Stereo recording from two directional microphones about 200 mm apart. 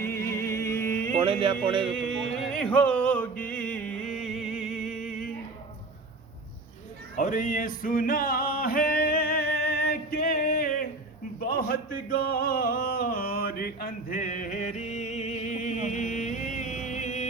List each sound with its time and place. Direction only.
0.0 s music: 15° left (ahead or behind)
1.2 s music: 25° right (ahead or behind)
2.0 s music: centre (ahead or behind)
7.2 s male singing: 40° left (ahead or behind)
11.3 s a sound: 50° left (ahead or behind)